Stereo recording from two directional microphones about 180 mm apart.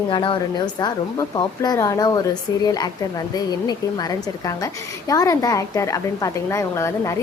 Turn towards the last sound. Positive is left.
turn(degrees=15)  # may be behind; listen again after turning